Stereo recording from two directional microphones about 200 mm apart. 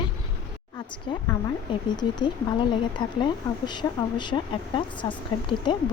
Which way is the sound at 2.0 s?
20° left (ahead or behind).